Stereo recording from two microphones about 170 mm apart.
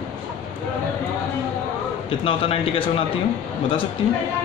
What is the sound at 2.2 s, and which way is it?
Speech, 35° left (ahead or behind).